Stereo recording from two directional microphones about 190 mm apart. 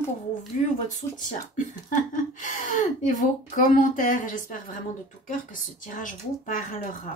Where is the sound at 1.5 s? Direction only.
45° left (ahead or behind).